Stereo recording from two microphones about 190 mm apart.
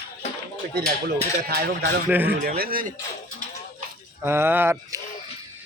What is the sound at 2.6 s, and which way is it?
Speech, 50° right (ahead or behind).